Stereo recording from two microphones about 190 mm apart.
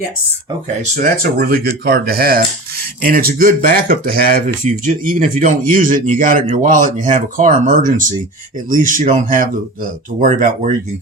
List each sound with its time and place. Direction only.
0.9 s speech: 50° right (ahead or behind)